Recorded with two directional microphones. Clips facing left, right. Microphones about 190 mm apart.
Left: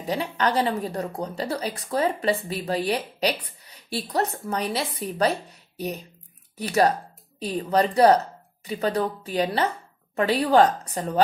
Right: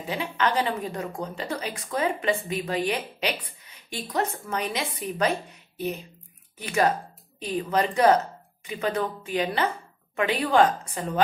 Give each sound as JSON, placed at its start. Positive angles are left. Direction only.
{"t": 0.0, "sound": "speech", "side_deg": 35}
{"t": 6.5, "sound": "speech", "side_deg": 40}